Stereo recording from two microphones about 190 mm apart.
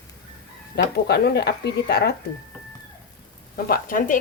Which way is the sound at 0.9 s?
60° left (ahead or behind).